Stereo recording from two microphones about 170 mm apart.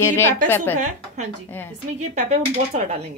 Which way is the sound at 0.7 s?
45° right (ahead or behind).